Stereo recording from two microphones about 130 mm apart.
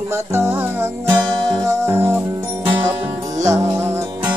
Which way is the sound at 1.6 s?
20° right (ahead or behind).